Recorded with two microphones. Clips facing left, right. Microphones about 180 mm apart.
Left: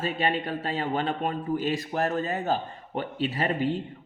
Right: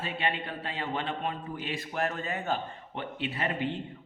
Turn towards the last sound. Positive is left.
turn(degrees=40)  # may be behind; listen again after turning